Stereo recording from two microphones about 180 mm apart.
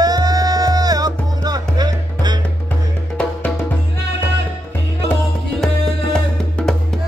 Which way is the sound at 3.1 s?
5° left (ahead or behind).